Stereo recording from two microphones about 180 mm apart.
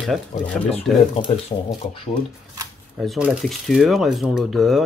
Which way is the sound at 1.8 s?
35° left (ahead or behind).